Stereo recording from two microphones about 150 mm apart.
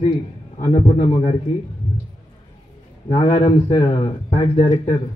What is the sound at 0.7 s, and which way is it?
Speech, 40° left (ahead or behind).